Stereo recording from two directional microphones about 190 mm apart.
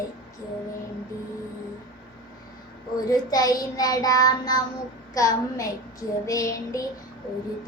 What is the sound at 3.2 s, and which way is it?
Child singing, 20° left (ahead or behind).